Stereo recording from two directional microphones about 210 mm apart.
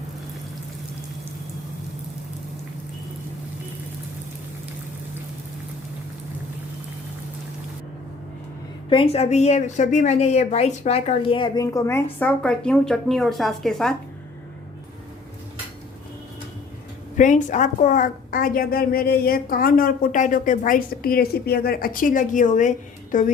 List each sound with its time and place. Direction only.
8.9 s a woman's voice: 25° left (ahead or behind); by 13.9 s centre (ahead or behind)
17.2 s a woman's voice: 35° left (ahead or behind)